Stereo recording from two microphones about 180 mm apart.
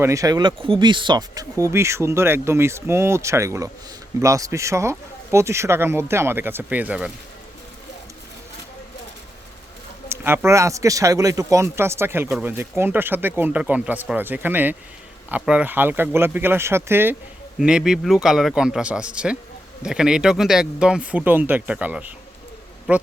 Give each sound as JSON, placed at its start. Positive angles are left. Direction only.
{"t": 0.0, "sound": "speech", "side_deg": -20}
{"t": 10.1, "sound": "speech", "side_deg": -15}